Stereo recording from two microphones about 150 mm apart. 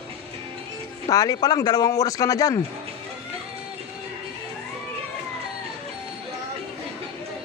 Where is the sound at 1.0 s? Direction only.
25° left (ahead or behind).